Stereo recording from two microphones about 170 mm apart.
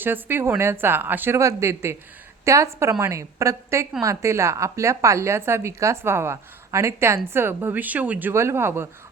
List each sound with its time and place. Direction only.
0.0 s a woman's voice: 10° right (ahead or behind)